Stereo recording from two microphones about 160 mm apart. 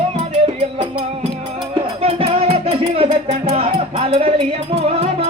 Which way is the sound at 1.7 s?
35° right (ahead or behind).